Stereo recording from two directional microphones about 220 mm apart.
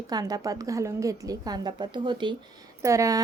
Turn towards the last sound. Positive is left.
turn(degrees=-15)  # may be behind; listen again after turning